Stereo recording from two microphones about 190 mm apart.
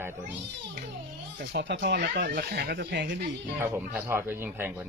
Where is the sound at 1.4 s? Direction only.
65° right (ahead or behind).